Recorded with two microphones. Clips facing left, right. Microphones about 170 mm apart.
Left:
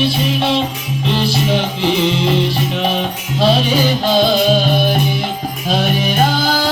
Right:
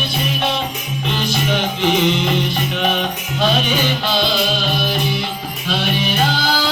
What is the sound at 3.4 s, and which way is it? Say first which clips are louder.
Music: left 4 dB; 35° left (ahead or behind).